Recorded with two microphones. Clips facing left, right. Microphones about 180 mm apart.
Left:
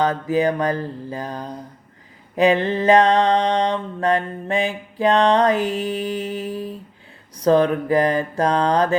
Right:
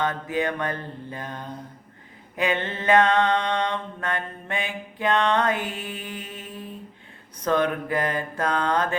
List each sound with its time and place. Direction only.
0.0 s mantra: 35° left (ahead or behind)